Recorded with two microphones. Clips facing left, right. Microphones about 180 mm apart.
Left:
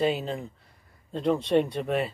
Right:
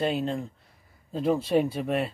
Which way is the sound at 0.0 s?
Centre (ahead or behind).